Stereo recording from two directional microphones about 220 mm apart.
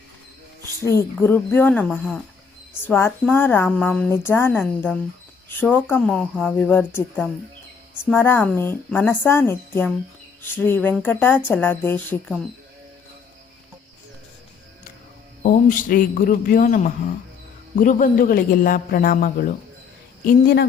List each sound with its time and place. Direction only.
0.9 s speech: 10° left (ahead or behind)
15.4 s a man's voice: 40° left (ahead or behind)